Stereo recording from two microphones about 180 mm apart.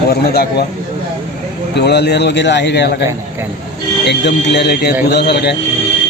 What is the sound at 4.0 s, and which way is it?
A man's voice, 70° left (ahead or behind).